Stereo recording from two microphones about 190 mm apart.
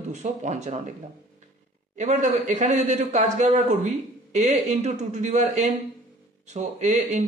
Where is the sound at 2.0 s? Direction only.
40° right (ahead or behind).